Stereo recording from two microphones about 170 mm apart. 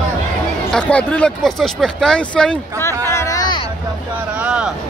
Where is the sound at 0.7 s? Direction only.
5° left (ahead or behind).